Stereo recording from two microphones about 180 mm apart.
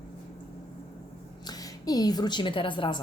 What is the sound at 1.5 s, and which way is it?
A woman's voice, 20° left (ahead or behind).